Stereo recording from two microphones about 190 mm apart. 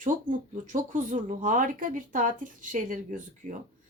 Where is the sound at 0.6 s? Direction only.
40° right (ahead or behind).